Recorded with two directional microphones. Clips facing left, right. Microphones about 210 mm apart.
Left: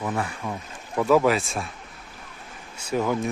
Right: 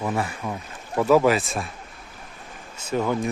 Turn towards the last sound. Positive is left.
turn(degrees=10)  # may be behind; listen again after turning